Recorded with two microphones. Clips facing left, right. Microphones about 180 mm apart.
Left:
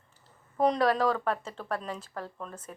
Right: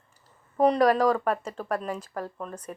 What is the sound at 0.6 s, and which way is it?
Speech, 10° right (ahead or behind).